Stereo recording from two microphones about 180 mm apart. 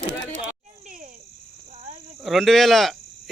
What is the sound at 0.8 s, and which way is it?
Cricket, 45° right (ahead or behind).